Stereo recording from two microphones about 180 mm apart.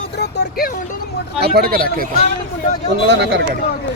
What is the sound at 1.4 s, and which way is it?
Speech, 60° right (ahead or behind).